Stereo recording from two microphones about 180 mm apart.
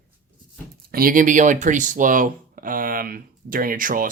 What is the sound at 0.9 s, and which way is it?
Speech, 50° right (ahead or behind).